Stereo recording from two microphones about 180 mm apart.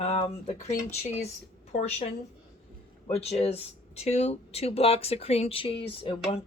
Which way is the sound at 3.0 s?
35° left (ahead or behind).